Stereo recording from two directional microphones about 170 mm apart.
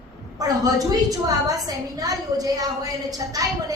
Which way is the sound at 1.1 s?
20° right (ahead or behind).